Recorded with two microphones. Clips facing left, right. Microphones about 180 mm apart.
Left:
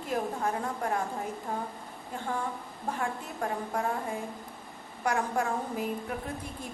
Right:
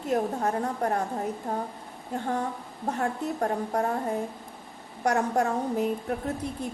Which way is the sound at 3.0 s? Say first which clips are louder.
Right 7 dB; 40° right (ahead or behind).